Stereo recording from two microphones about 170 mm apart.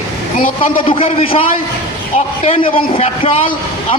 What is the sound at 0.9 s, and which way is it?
A man's voice, 35° left (ahead or behind).